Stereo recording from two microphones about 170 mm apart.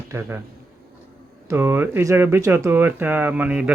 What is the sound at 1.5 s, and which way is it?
Speech, 15° right (ahead or behind).